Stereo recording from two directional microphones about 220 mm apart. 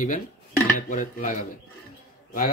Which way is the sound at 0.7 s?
35° left (ahead or behind).